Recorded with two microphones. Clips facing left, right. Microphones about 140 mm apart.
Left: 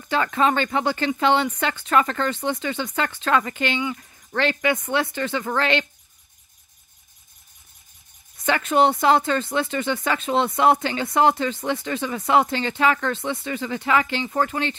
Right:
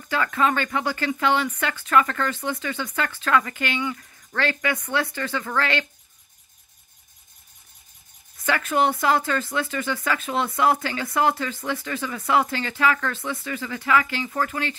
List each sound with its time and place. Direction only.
0.1 s speech: 25° left (ahead or behind)
8.5 s speech: 25° left (ahead or behind)